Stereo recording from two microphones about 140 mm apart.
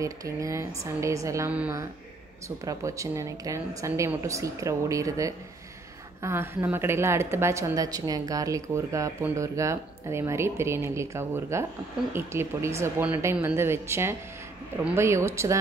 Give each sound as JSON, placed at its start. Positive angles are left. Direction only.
{"t": 0.0, "sound": "a woman's voice", "side_deg": -25}
{"t": 1.5, "sound": "speech", "side_deg": -10}
{"t": 2.6, "sound": "a woman's voice", "side_deg": -25}